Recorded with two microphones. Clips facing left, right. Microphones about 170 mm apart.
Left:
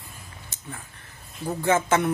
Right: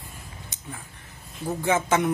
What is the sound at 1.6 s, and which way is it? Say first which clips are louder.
Speech: left 1 dB; 15° right (ahead or behind).